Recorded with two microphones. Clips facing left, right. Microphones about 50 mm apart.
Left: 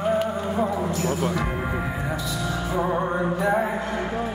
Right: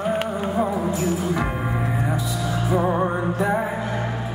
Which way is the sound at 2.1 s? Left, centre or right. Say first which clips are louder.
Right 2 dB; centre.